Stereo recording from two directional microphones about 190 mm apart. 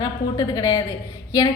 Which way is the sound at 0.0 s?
20° left (ahead or behind).